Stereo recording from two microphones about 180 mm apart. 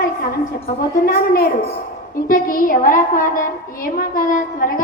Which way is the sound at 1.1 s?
55° left (ahead or behind).